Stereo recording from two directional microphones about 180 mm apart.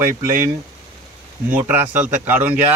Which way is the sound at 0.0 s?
15° right (ahead or behind).